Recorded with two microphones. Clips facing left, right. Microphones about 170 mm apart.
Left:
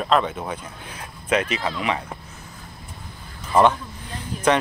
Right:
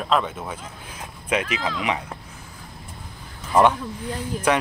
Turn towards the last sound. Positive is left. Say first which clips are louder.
# left 1 dB
turn(degrees=-5)  # may be behind; listen again after turning